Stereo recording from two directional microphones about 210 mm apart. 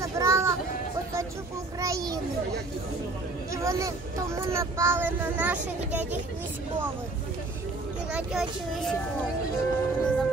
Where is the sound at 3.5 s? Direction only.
15° right (ahead or behind).